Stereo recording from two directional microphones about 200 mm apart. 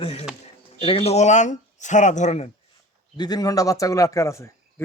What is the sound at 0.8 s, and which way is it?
Speech, 30° left (ahead or behind).